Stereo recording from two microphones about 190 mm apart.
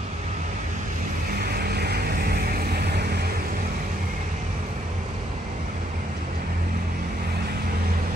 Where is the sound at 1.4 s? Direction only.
55° right (ahead or behind).